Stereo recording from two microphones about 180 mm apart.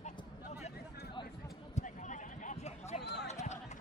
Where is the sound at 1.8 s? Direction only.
40° left (ahead or behind).